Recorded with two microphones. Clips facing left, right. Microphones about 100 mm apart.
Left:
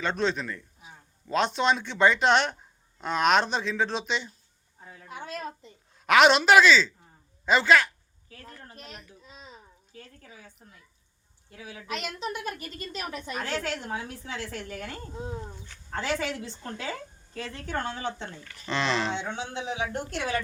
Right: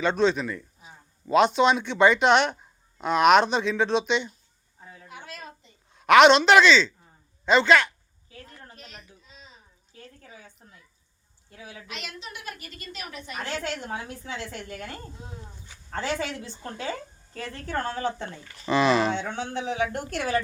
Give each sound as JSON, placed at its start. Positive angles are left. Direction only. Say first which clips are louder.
{"t": 0.0, "sound": "speech", "louder": "right 5 dB", "side_deg": 0}
{"t": 5.0, "sound": "a sound", "louder": "left 6 dB", "side_deg": 40}
{"t": 5.9, "sound": "a woman's voice", "louder": "right 4 dB", "side_deg": 0}
{"t": 9.9, "sound": "a woman's voice", "louder": "right 2 dB", "side_deg": -25}
{"t": 11.9, "sound": "a woman's voice", "louder": "left 9 dB", "side_deg": 45}
{"t": 13.9, "sound": "a woman's voice", "louder": "right 1 dB", "side_deg": -25}
{"t": 15.9, "sound": "speech", "louder": "even", "side_deg": -30}
{"t": 18.4, "sound": "speech", "louder": "right 7 dB", "side_deg": -15}
{"t": 19.2, "sound": "speech", "louder": "right 3 dB", "side_deg": -45}
{"t": 20.1, "sound": "speech", "louder": "right 4 dB", "side_deg": -40}